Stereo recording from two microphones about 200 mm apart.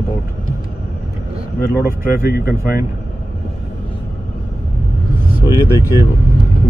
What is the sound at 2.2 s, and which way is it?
Speech, 50° left (ahead or behind).